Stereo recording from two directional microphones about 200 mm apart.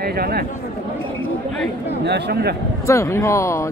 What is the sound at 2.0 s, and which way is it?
Speech, 55° right (ahead or behind).